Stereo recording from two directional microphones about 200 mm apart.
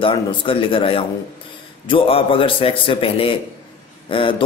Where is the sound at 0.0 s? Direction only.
25° left (ahead or behind).